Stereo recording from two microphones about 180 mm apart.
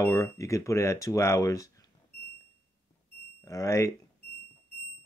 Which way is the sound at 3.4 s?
20° left (ahead or behind).